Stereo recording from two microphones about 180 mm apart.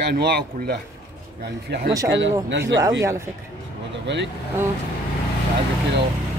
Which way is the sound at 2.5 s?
80° right.